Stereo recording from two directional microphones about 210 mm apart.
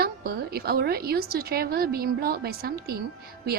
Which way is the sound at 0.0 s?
45° right (ahead or behind).